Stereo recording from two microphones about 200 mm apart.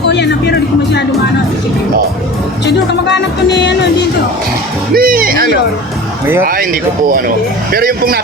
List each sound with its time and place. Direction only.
0.1 s music: 60° left (ahead or behind)
2.6 s speech: 60° left (ahead or behind)
4.9 s speech: 45° right (ahead or behind)